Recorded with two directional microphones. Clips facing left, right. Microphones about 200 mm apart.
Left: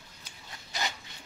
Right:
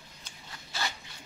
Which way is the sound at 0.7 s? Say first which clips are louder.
Left 1 dB; 15° left (ahead or behind).